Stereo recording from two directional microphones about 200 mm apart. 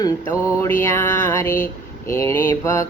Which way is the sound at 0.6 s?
15° left (ahead or behind).